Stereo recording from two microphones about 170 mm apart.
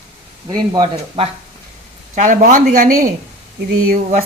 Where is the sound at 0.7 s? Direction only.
25° right (ahead or behind).